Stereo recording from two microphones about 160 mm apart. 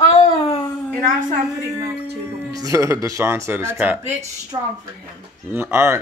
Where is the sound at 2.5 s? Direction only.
20° right (ahead or behind).